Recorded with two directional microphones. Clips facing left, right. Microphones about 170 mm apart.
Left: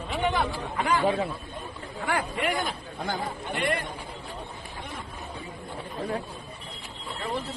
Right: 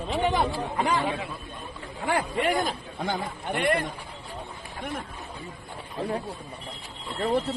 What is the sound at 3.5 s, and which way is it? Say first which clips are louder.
Speech: right 4 dB; 60° right (ahead or behind).